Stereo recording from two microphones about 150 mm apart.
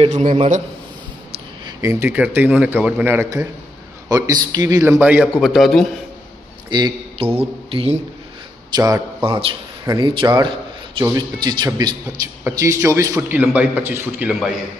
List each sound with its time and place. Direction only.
0.0 s a man's voice: 55° right (ahead or behind)
1.6 s a man's voice: 25° right (ahead or behind)
5.0 s a man's voice: 10° right (ahead or behind)
6.7 s speech: 35° right (ahead or behind)
8.7 s speech: 25° right (ahead or behind)
9.2 s a man's voice: 35° right (ahead or behind); by 14.3 s 10° right (ahead or behind)